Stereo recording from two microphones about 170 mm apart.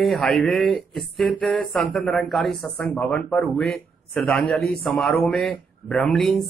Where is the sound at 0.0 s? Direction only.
5° left (ahead or behind).